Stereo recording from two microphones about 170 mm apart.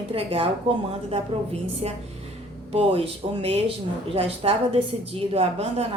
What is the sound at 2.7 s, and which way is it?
A woman's voice, 35° right (ahead or behind).